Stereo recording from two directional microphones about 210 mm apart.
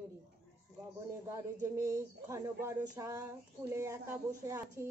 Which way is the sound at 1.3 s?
15° right (ahead or behind).